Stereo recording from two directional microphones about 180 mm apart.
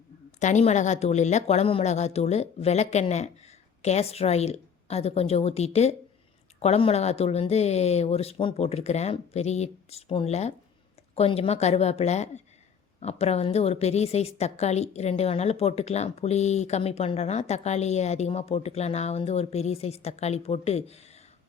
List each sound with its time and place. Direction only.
0.3 s a woman's voice: 40° left (ahead or behind)